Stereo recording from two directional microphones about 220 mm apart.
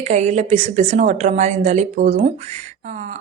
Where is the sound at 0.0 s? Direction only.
30° right (ahead or behind).